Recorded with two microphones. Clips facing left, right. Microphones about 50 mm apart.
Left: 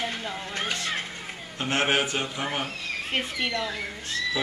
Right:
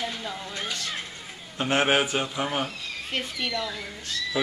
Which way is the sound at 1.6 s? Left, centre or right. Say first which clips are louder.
Right 2 dB; centre.